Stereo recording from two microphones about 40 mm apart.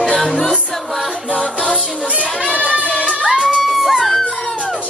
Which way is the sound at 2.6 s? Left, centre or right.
Right.